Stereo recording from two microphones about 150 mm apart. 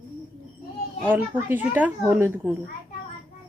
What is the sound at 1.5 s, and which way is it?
Speech, 10° right (ahead or behind).